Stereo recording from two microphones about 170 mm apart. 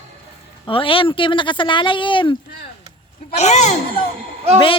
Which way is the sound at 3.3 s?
40° left (ahead or behind).